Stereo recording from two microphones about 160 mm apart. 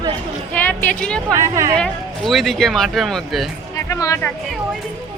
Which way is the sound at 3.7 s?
20° left (ahead or behind).